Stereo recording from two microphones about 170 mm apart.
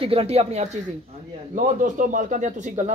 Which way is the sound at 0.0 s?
35° right (ahead or behind).